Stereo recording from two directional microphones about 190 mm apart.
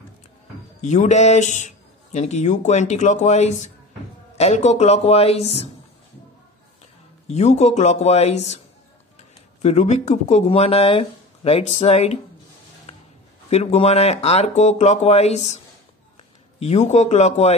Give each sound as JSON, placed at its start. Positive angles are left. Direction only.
{"t": 0.7, "sound": "speech", "side_deg": 40}
{"t": 7.2, "sound": "speech", "side_deg": 35}
{"t": 9.6, "sound": "speech", "side_deg": 35}
{"t": 12.9, "sound": "a sound", "side_deg": 35}
{"t": 13.5, "sound": "speech", "side_deg": 35}